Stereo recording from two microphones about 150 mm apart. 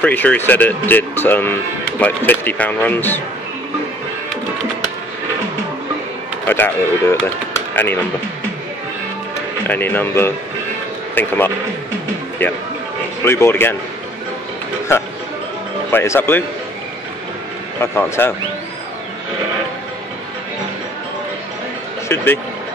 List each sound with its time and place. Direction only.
0.0 s speech: 10° left (ahead or behind)
6.4 s speech: 15° left (ahead or behind)
9.7 s speech: 15° left (ahead or behind)
13.2 s speech: 15° left (ahead or behind)
15.9 s speech: 15° left (ahead or behind)
17.7 s speech: 15° left (ahead or behind)
22.1 s speech: 15° left (ahead or behind)